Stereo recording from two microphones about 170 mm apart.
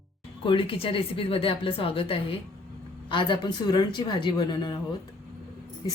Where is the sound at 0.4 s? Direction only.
30° left (ahead or behind).